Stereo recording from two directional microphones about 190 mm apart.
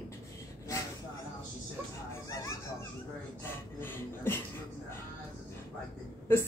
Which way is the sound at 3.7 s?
10° left (ahead or behind).